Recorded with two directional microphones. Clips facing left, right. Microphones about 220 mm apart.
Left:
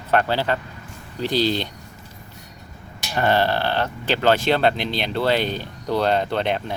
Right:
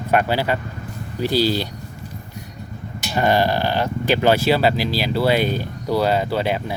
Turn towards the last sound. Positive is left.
turn(degrees=-5)  # may be behind; listen again after turning